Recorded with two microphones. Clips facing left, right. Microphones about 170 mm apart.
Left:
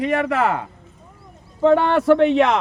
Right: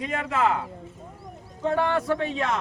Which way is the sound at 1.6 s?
85° left.